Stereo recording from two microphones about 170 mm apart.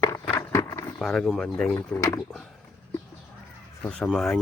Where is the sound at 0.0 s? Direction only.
15° left (ahead or behind).